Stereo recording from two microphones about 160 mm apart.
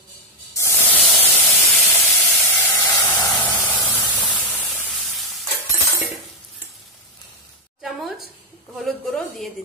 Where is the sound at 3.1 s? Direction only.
15° left (ahead or behind).